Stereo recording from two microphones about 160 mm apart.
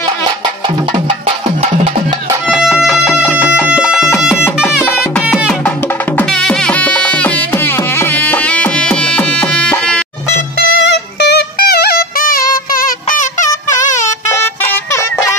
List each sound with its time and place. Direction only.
2.5 s music: 5° right (ahead or behind)
11.1 s music: 90° left; by 14.0 s 50° left (ahead or behind)